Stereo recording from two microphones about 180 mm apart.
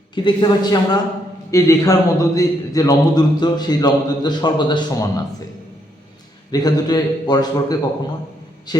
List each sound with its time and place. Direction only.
0.1 s a man's voice: 25° left (ahead or behind)
6.5 s a man's voice: 20° left (ahead or behind)